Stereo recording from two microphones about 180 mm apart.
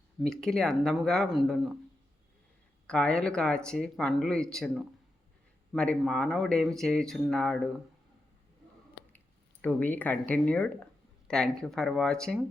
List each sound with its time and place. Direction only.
0.2 s speech: centre (ahead or behind)
2.8 s speech: 5° left (ahead or behind)
9.1 s speech: 10° left (ahead or behind)